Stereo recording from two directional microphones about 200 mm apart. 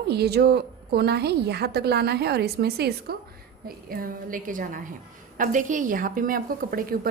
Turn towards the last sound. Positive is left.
turn(degrees=-45)  # may be behind; listen again after turning